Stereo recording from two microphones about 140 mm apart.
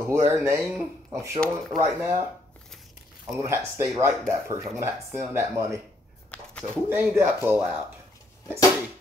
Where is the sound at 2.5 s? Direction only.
Centre (ahead or behind).